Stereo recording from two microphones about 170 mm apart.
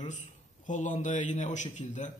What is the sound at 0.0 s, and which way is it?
Speech, 45° left (ahead or behind).